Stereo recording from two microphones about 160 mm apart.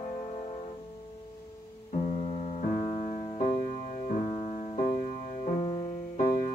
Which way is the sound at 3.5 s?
55° left (ahead or behind).